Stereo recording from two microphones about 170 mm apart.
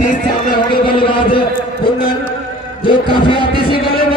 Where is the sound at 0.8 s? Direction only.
30° left (ahead or behind).